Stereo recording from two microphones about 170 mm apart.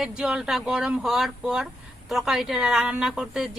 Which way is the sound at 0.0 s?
5° right (ahead or behind).